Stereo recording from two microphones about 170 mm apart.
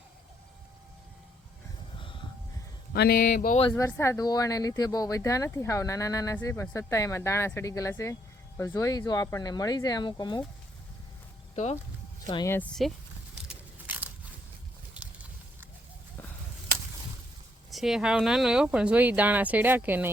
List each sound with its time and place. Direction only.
2.9 s a sound: 65° left (ahead or behind)
3.7 s speech: 15° left (ahead or behind)
11.5 s speech: 40° left (ahead or behind)
12.2 s speech: 25° left (ahead or behind)
12.5 s speech: centre (ahead or behind)
13.5 s a sound: 10° right (ahead or behind)
17.7 s speech: centre (ahead or behind)